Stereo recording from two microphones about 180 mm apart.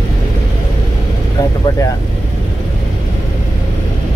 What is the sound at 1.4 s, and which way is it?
Vehicle, 20° left (ahead or behind).